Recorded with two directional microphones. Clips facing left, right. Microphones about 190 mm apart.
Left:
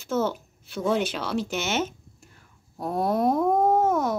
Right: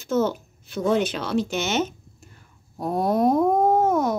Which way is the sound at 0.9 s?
10° left (ahead or behind).